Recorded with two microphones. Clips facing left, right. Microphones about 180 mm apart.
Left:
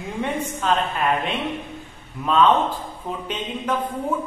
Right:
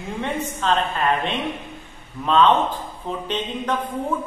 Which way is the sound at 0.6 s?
10° left (ahead or behind).